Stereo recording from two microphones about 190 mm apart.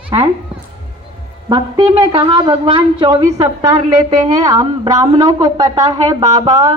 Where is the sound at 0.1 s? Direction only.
25° right (ahead or behind).